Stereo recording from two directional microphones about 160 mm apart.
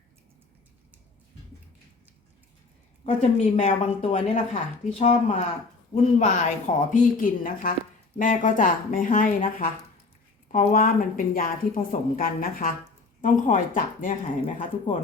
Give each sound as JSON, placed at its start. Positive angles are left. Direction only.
{"t": 3.2, "sound": "a woman's voice", "side_deg": 45}